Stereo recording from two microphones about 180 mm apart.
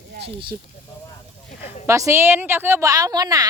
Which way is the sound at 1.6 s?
40° left (ahead or behind).